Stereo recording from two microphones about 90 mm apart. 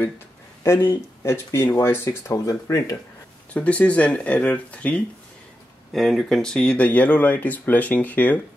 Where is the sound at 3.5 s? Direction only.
15° left (ahead or behind).